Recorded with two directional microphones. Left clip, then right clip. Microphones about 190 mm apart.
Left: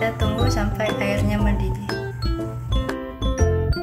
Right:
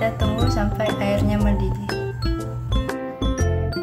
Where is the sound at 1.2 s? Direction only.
15° right (ahead or behind).